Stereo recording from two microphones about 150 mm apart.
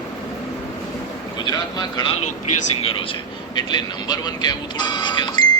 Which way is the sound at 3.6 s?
30° left (ahead or behind).